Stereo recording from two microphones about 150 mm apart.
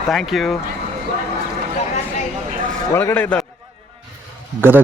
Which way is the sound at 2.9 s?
15° left (ahead or behind).